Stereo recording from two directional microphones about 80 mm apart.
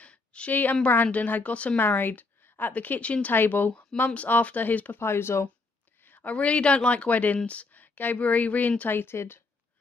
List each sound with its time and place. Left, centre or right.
0.0 s a sound: centre
0.8 s a woman's voice: centre
5.0 s speech: left
6.0 s a woman's voice: left